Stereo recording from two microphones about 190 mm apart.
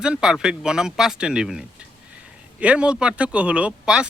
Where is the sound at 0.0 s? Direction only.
5° right (ahead or behind).